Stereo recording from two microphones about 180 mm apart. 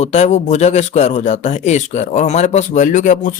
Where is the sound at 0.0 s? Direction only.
40° left (ahead or behind).